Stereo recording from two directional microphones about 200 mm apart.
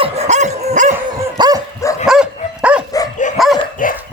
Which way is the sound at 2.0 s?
5° right (ahead or behind).